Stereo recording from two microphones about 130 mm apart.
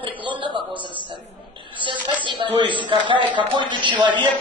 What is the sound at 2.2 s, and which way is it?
A man's voice, 40° right (ahead or behind).